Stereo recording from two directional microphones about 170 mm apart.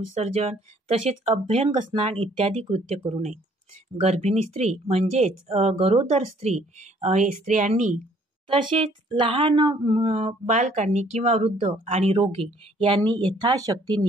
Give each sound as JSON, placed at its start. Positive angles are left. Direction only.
{"t": 0.1, "sound": "speech", "side_deg": -40}
{"t": 8.5, "sound": "speech", "side_deg": -30}
{"t": 10.1, "sound": "speech", "side_deg": -40}